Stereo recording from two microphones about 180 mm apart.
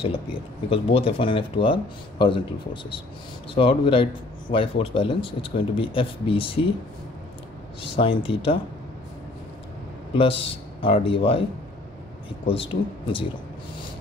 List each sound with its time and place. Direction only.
0.0 s speech: 30° left (ahead or behind)
7.9 s speech: 30° left (ahead or behind)
10.1 s speech: 30° left (ahead or behind)
12.4 s speech: 30° left (ahead or behind)